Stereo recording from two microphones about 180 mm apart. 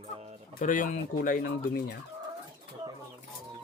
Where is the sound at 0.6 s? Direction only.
45° left (ahead or behind).